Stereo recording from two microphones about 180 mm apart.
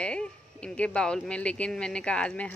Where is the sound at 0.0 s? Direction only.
5° left (ahead or behind).